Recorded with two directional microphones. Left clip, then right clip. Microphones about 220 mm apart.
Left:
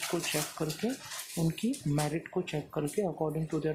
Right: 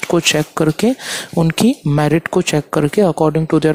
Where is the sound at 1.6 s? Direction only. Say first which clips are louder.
Right 18 dB; 45° right (ahead or behind).